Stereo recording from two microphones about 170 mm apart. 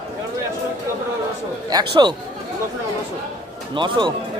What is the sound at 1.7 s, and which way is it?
Speech, 25° right (ahead or behind).